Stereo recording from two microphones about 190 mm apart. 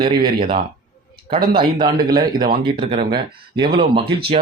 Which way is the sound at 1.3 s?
25° right (ahead or behind).